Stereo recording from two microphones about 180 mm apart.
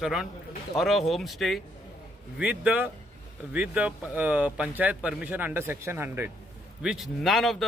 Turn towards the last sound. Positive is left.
turn(degrees=0)  # may be behind; listen again after turning